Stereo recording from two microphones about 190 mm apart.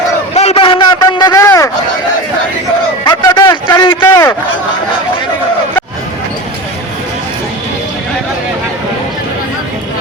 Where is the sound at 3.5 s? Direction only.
25° left (ahead or behind).